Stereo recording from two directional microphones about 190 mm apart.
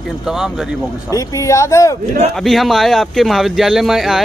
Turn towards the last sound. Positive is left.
turn(degrees=0)  # may be behind; listen again after turning